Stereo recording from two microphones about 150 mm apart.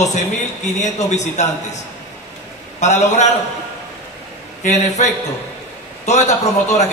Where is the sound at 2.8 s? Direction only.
50° left (ahead or behind).